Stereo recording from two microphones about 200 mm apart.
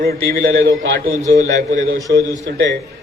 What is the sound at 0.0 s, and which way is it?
Speech, 50° right (ahead or behind).